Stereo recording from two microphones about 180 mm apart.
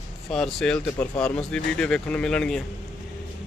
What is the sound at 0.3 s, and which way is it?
Speech, centre (ahead or behind).